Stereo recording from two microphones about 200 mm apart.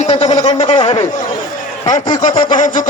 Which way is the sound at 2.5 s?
40° left (ahead or behind).